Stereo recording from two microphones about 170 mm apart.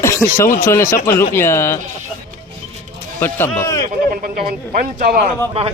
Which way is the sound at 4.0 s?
55° right (ahead or behind).